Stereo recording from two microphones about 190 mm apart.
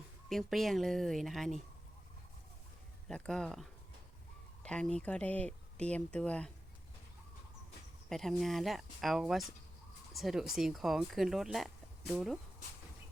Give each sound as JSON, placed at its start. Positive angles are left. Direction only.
{"t": 0.3, "sound": "speech", "side_deg": 0}
{"t": 3.1, "sound": "speech", "side_deg": 5}
{"t": 8.1, "sound": "speech", "side_deg": 0}